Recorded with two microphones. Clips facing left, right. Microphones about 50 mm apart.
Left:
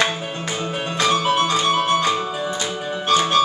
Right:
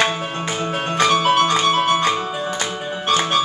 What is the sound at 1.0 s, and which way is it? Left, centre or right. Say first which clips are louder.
Music: right 3 dB; right.